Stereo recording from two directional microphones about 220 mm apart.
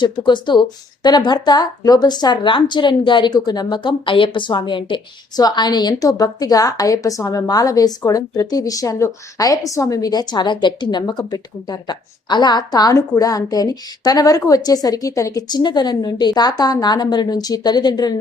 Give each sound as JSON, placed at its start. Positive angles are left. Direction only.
{"t": 0.0, "sound": "a woman's voice", "side_deg": 20}